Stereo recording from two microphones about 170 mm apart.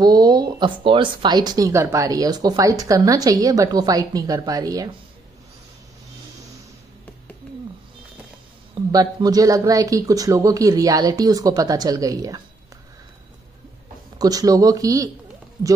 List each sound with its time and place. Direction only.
0.0 s speech: 25° right (ahead or behind)
8.7 s speech: 25° right (ahead or behind)
14.1 s speech: 20° right (ahead or behind)